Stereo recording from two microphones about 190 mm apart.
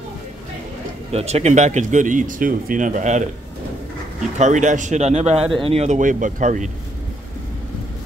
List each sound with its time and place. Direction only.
1.1 s speech: 35° right (ahead or behind)
4.4 s speech: 40° right (ahead or behind)